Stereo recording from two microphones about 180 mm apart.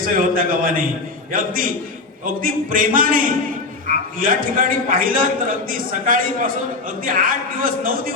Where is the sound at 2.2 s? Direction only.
50° right (ahead or behind).